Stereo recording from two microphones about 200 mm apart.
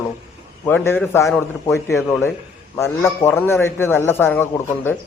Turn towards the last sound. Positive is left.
turn(degrees=10)  # may be behind; listen again after turning